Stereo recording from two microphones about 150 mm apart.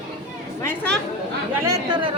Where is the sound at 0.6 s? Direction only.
10° left (ahead or behind).